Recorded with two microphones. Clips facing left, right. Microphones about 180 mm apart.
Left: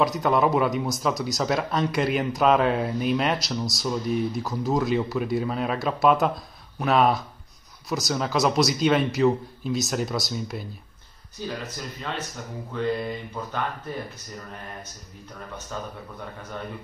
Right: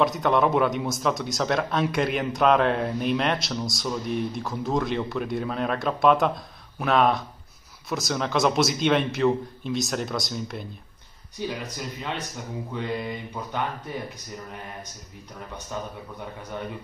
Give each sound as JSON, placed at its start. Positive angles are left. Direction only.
{"t": 0.0, "sound": "speech", "side_deg": 0}
{"t": 11.3, "sound": "mantra", "side_deg": -15}
{"t": 15.7, "sound": "mantra", "side_deg": -15}